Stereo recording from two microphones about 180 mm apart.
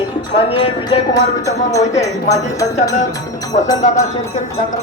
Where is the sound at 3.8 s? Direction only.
45° left (ahead or behind).